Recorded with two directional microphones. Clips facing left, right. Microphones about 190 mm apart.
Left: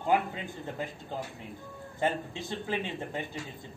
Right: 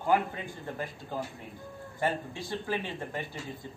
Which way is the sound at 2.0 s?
20° left (ahead or behind).